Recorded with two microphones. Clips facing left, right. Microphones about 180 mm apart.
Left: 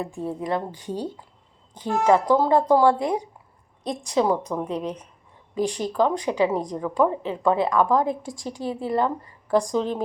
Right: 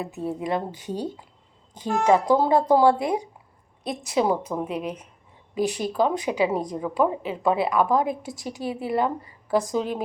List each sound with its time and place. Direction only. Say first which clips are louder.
0.3 s a woman's voice: right 1 dB; 15° right (ahead or behind)